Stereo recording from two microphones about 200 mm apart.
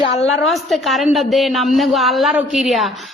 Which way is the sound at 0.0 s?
30° left (ahead or behind).